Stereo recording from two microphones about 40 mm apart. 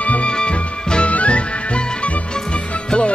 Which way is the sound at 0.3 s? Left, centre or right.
Left.